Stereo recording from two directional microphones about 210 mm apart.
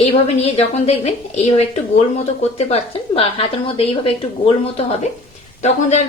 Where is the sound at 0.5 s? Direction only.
30° left (ahead or behind).